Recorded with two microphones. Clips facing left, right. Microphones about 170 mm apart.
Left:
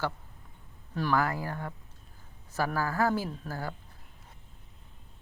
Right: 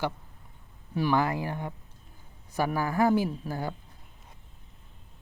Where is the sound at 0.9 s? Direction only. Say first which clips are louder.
Right 3 dB; 15° right (ahead or behind).